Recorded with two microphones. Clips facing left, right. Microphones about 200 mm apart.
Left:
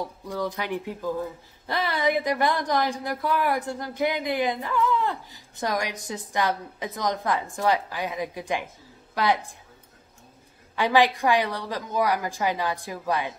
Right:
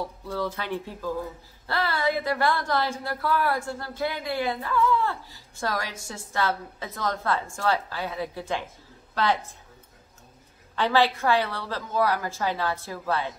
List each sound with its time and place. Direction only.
0.0 s speech: 15° left (ahead or behind)
10.8 s speech: 15° left (ahead or behind)